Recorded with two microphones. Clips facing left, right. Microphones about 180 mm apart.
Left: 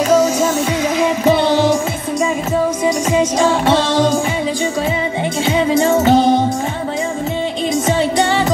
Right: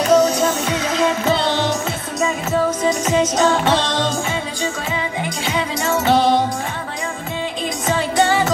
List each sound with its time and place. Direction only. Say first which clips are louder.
0.1 s music: even; 10° left (ahead or behind)
2.8 s music: left 2 dB; 10° left (ahead or behind)
5.8 s music: left 7 dB; 30° left (ahead or behind)